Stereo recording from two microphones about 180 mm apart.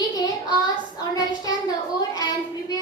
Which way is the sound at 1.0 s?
20° left (ahead or behind).